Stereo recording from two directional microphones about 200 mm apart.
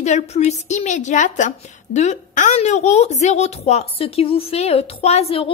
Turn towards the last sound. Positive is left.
turn(degrees=30)  # may be behind; listen again after turning